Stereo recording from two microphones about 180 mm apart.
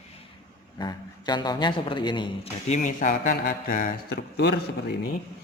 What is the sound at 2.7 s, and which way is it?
Speech, 45° left (ahead or behind).